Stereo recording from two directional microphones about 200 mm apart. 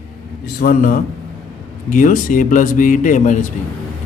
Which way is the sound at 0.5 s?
45° left (ahead or behind).